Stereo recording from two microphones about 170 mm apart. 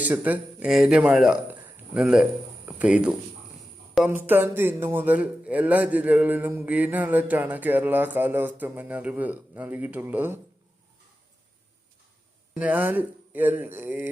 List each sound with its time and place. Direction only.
0.0 s speech: 10° right (ahead or behind)
2.6 s a sound: 10° right (ahead or behind)
3.9 s a man's voice: 5° right (ahead or behind)
12.5 s a man's voice: 10° right (ahead or behind)